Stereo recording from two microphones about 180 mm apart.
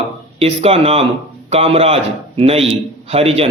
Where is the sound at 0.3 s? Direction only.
35° right (ahead or behind).